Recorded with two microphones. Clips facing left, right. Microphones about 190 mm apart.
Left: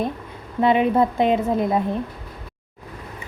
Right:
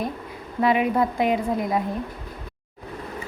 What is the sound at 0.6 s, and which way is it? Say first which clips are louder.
A woman's voice: left 3 dB; 25° left (ahead or behind).